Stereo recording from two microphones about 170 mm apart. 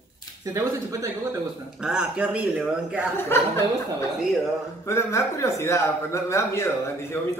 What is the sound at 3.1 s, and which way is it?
Speech, 15° left (ahead or behind).